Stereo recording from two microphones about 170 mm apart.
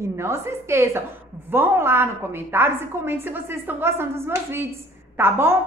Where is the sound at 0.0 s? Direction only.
15° right (ahead or behind).